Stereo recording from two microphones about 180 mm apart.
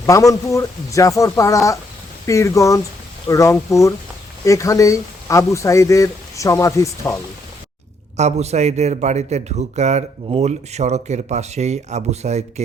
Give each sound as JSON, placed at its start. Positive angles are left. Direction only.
{"t": 0.0, "sound": "speech", "side_deg": 20}
{"t": 8.1, "sound": "a man's voice", "side_deg": -40}